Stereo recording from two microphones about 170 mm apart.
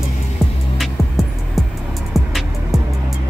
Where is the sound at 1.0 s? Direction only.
15° left (ahead or behind).